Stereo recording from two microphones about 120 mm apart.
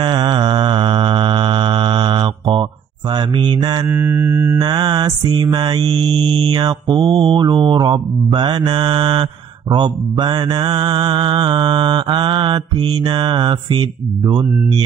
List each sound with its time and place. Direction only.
0.0 s mantra: 40° right (ahead or behind)
3.8 s mantra: 20° right (ahead or behind)
4.6 s mantra: 35° right (ahead or behind)